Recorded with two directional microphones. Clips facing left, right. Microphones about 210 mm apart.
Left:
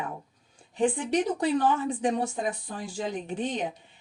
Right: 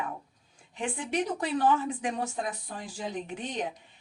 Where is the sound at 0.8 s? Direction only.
35° left (ahead or behind).